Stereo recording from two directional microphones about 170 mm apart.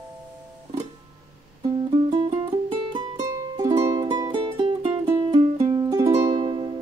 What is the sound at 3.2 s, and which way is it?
Music, 20° right (ahead or behind).